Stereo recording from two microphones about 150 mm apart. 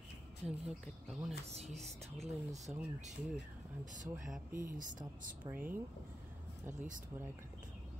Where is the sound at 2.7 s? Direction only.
5° right (ahead or behind).